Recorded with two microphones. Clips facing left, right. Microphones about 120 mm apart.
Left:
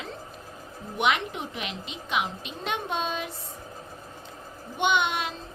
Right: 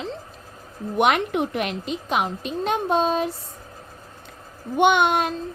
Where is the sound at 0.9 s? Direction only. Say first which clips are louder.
Right 6 dB; 50° right (ahead or behind).